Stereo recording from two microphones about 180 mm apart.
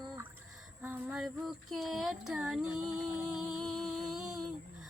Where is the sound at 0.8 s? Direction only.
10° right (ahead or behind).